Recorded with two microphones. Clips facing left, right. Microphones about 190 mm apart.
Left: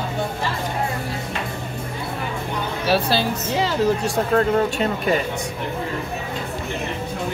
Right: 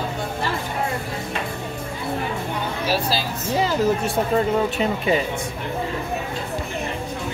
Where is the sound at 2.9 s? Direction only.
65° left (ahead or behind).